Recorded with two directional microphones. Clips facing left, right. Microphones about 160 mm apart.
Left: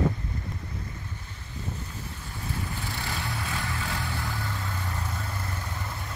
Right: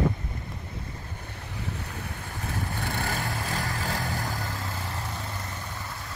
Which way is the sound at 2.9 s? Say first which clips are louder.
Right 3 dB; 45° right (ahead or behind).